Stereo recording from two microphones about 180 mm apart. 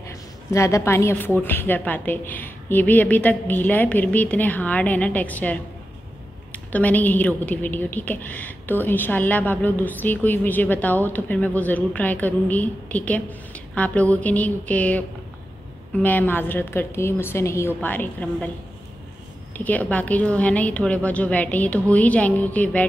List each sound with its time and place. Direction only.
0.0 s a woman's voice: 15° left (ahead or behind)
19.5 s a woman's voice: 10° left (ahead or behind)